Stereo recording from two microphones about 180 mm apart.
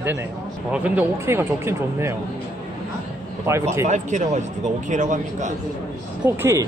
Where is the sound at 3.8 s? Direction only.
40° right (ahead or behind).